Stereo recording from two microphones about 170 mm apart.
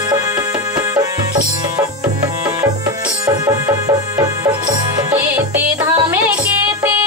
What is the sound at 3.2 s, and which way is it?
Music, 15° right (ahead or behind).